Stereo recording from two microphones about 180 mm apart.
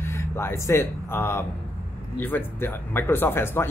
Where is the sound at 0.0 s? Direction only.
15° left (ahead or behind).